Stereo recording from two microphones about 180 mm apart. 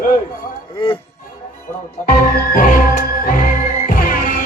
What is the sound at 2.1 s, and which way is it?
Music, 50° left (ahead or behind).